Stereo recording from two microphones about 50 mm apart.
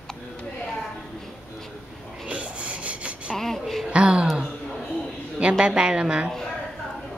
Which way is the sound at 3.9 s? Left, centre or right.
Right.